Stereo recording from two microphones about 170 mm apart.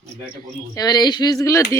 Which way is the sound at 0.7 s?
25° left (ahead or behind).